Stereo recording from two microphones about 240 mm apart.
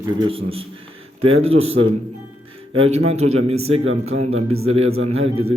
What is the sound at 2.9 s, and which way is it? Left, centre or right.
A man's voice, right.